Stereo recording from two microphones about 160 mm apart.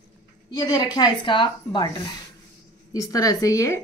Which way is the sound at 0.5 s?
25° left (ahead or behind).